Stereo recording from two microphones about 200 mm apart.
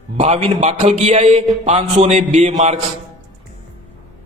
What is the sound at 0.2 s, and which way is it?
A man's voice, 30° right (ahead or behind).